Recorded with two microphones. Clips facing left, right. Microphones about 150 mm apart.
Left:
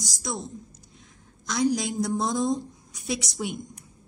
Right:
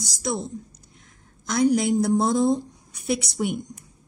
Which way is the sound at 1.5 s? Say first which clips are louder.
Right 5 dB; 55° right (ahead or behind).